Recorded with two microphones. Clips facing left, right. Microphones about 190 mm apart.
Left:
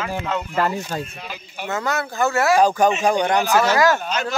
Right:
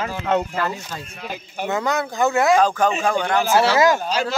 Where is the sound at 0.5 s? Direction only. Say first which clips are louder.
Left 4 dB; 40° left (ahead or behind).